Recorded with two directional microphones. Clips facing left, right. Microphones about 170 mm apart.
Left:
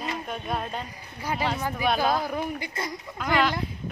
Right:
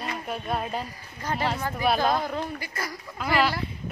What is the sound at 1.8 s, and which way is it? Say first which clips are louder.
Speech: right 1 dB; centre (ahead or behind).